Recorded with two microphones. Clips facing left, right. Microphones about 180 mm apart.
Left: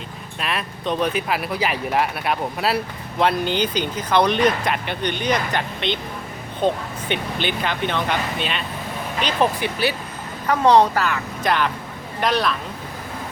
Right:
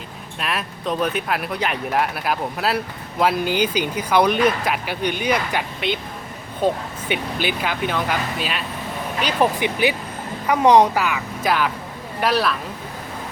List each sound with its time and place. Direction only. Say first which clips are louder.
0.3 s a woman's voice: even; centre (ahead or behind)
9.2 s a woman's voice: right 1 dB; 15° right (ahead or behind)